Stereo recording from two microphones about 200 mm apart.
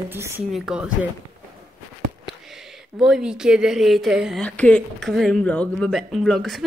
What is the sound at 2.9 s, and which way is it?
Speech, centre (ahead or behind).